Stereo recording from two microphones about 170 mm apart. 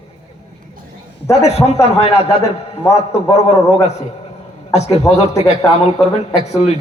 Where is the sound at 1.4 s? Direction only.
40° left (ahead or behind).